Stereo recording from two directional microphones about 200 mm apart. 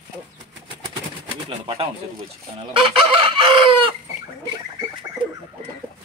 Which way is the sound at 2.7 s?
25° right (ahead or behind).